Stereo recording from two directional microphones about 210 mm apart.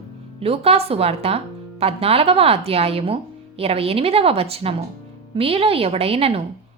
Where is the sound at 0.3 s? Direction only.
30° right (ahead or behind).